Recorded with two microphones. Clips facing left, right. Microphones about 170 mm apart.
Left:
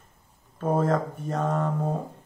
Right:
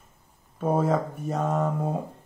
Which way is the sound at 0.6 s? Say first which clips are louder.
Even; 10° right (ahead or behind).